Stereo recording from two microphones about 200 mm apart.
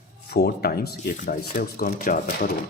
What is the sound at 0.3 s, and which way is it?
Speech, 50° left (ahead or behind).